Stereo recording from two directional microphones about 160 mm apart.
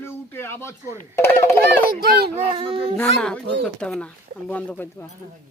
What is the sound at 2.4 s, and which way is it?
Speech, 35° right (ahead or behind).